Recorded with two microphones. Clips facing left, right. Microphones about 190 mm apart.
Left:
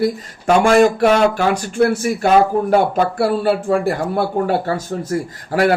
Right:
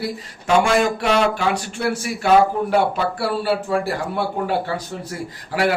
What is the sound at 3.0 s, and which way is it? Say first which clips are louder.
Speech: left 5 dB; 50° left (ahead or behind).